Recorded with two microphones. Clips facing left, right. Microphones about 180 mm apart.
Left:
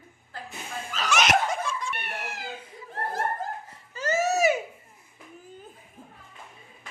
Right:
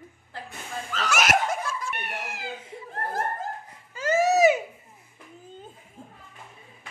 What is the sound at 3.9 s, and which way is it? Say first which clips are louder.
Baby cry: right 4 dB; 10° right (ahead or behind).